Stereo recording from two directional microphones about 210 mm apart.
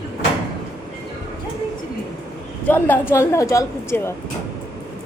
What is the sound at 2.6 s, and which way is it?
A woman's voice, 10° left (ahead or behind).